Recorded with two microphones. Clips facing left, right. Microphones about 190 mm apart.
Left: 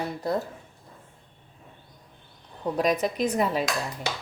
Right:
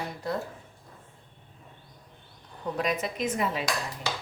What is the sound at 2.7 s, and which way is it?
Speech, 35° left (ahead or behind).